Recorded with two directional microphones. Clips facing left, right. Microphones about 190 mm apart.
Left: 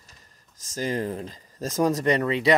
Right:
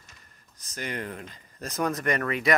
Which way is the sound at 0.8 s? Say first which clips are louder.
Left 7 dB; 35° left (ahead or behind).